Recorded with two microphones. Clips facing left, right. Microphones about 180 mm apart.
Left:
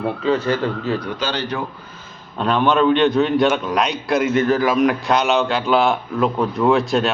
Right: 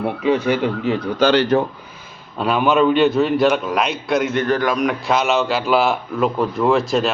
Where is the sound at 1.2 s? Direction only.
70° right (ahead or behind).